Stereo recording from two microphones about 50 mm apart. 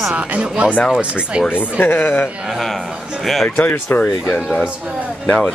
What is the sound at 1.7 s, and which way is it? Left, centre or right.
Speech, left.